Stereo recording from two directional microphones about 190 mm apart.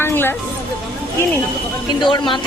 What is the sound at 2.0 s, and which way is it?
Speech, 25° left (ahead or behind).